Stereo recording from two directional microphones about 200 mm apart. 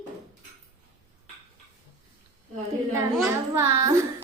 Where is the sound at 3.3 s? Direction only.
15° right (ahead or behind).